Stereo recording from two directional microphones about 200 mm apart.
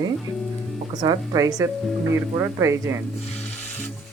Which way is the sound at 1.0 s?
20° right (ahead or behind).